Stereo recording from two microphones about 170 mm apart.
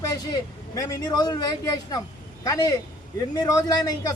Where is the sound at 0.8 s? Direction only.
20° left (ahead or behind).